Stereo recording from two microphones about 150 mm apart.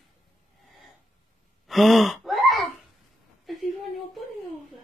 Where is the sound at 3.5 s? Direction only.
Centre (ahead or behind).